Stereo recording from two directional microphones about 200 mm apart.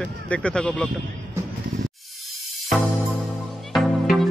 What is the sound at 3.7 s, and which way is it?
Music, centre (ahead or behind).